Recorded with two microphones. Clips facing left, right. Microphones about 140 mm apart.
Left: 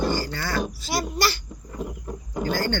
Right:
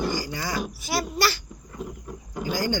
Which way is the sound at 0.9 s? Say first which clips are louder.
Even; centre (ahead or behind).